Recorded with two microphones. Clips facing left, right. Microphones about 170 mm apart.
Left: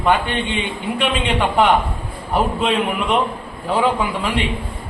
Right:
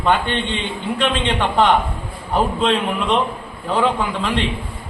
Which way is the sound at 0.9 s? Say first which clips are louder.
Even; 10° left (ahead or behind).